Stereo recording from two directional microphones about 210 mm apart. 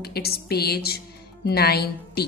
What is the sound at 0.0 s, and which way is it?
A woman's voice, 50° left (ahead or behind).